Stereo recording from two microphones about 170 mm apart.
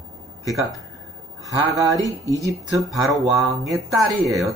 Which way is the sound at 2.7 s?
Centre (ahead or behind).